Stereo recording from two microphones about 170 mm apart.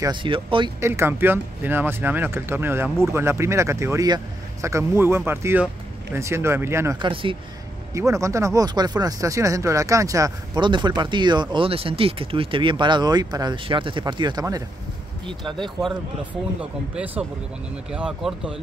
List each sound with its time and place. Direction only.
0.0 s speech: 30° right (ahead or behind)
0.7 s speech: 15° right (ahead or behind)
7.0 s speech: 30° right (ahead or behind)
7.9 s speech: 20° right (ahead or behind)
16.9 s speech: 10° right (ahead or behind)